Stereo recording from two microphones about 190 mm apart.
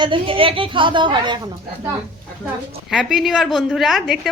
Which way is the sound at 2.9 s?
Centre (ahead or behind).